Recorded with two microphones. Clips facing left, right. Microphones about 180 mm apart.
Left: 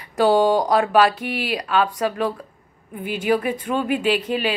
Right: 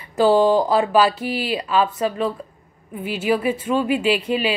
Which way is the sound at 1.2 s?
60° left (ahead or behind).